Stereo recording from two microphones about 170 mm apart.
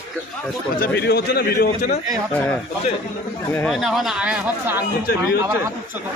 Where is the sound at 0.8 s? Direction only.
70° left (ahead or behind); by 2.0 s 50° left (ahead or behind).